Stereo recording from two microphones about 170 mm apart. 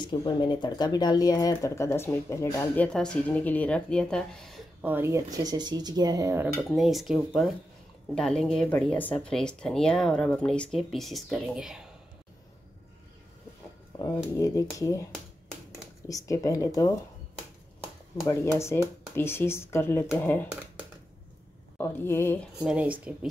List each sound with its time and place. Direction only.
0.0 s speech: 25° left (ahead or behind); by 4.6 s 5° left (ahead or behind)
4.8 s speech: 15° right (ahead or behind)
6.7 s speech: centre (ahead or behind)
13.9 s speech: 25° left (ahead or behind)
16.1 s speech: 20° left (ahead or behind)
18.2 s speech: 15° left (ahead or behind)
21.7 s speech: 15° left (ahead or behind)
22.6 s speech: 5° right (ahead or behind)